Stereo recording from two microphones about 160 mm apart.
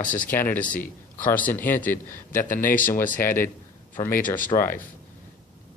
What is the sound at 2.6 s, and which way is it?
Speech, 55° left (ahead or behind).